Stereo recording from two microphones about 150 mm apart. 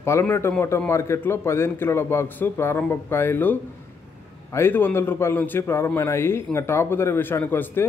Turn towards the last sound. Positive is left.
turn(degrees=15)  # may be behind; listen again after turning